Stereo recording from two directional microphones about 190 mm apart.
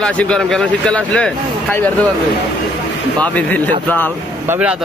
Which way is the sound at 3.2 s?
10° left (ahead or behind).